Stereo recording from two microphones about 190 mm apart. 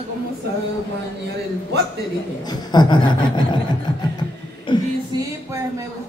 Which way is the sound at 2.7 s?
25° left (ahead or behind).